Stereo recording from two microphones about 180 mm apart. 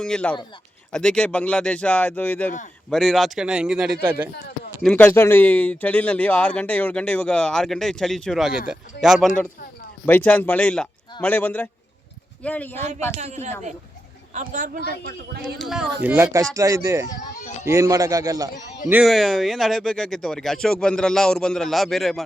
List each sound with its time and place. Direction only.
0.0 s speech: 5° left (ahead or behind)
4.8 s speech: 5° left (ahead or behind)
10.1 s speech: 10° left (ahead or behind)
13.1 s a man's voice: 35° right (ahead or behind); by 15.5 s 60° right (ahead or behind)
15.6 s speech: centre (ahead or behind)
16.0 s a man's voice: 15° right (ahead or behind)
18.9 s speech: 5° right (ahead or behind)